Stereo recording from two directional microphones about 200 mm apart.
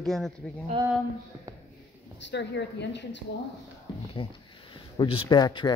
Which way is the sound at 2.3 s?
60° left (ahead or behind).